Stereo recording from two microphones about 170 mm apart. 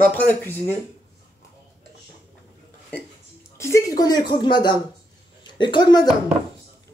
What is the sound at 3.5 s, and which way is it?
Speech, 15° left (ahead or behind).